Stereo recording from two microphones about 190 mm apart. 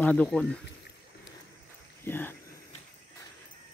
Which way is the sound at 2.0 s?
10° left (ahead or behind).